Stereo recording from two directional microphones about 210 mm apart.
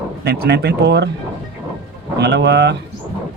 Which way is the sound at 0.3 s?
50° right (ahead or behind).